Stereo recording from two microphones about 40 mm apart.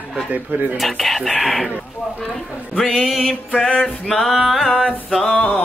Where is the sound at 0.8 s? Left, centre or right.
Centre.